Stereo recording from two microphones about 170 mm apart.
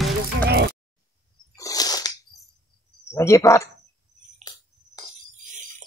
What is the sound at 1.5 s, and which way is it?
Sneeze, 20° left (ahead or behind).